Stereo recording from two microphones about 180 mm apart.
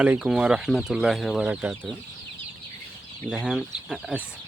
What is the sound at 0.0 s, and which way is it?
Speech, 5° right (ahead or behind).